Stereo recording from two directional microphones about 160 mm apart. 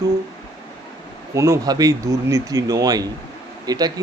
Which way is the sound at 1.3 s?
20° right (ahead or behind).